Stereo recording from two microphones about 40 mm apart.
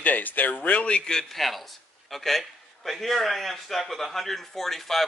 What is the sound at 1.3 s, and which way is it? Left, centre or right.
A man's voice, centre.